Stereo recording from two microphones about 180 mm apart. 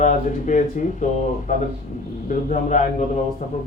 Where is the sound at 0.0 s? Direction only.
45° left (ahead or behind).